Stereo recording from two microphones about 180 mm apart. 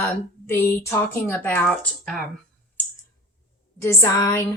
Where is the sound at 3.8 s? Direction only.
15° left (ahead or behind).